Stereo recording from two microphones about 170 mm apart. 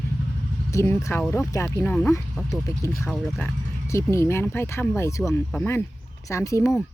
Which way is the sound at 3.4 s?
15° left (ahead or behind).